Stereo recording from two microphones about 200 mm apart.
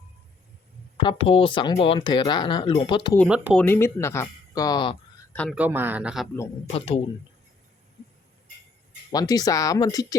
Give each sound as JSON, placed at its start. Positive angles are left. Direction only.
{"t": 0.9, "sound": "speech", "side_deg": 25}
{"t": 3.2, "sound": "speech", "side_deg": -5}
{"t": 3.6, "sound": "speech", "side_deg": 10}
{"t": 5.3, "sound": "speech", "side_deg": 5}
{"t": 5.5, "sound": "a man's voice", "side_deg": -10}
{"t": 6.7, "sound": "speech", "side_deg": 30}
{"t": 9.1, "sound": "speech", "side_deg": 20}